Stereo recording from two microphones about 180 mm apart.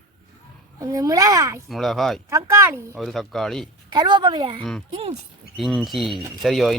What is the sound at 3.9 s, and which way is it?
A woman's voice, 25° right (ahead or behind).